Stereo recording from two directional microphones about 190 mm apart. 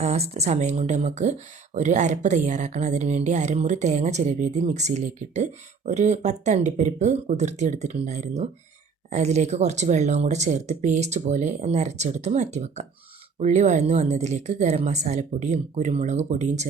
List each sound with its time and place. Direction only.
0.0 s speech: 35° right (ahead or behind)